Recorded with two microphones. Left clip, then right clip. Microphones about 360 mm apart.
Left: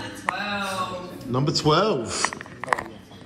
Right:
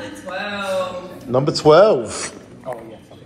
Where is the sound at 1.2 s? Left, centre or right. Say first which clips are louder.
Right 9 dB; centre.